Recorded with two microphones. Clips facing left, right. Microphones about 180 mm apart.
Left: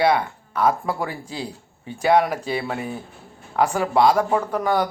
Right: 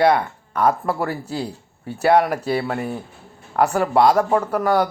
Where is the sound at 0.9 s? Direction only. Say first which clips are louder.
Right 3 dB; 5° right (ahead or behind).